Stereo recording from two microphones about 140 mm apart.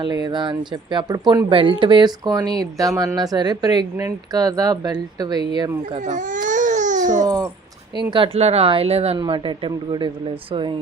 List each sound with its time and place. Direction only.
0.0 s speech: 30° right (ahead or behind)
6.1 s baby cry: 65° right (ahead or behind)
8.1 s speech: 45° right (ahead or behind)
9.1 s speech: 35° right (ahead or behind)